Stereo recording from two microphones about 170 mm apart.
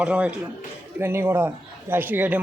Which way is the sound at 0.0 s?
5° right (ahead or behind).